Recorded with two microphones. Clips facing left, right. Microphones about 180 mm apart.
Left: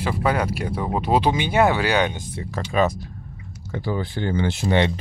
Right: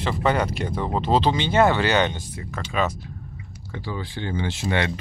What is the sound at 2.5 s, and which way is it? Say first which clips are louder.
Speech: left 4 dB; 40° left (ahead or behind).